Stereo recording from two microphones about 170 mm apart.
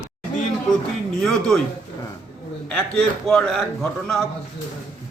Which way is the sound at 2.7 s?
5° left (ahead or behind).